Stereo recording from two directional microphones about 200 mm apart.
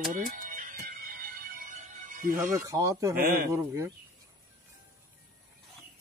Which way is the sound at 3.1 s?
45° right (ahead or behind).